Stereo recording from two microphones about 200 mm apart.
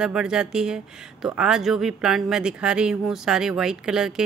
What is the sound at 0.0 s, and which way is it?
Speech, 5° right (ahead or behind).